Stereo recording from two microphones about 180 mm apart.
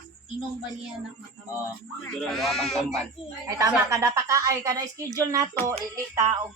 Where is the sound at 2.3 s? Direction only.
Centre (ahead or behind).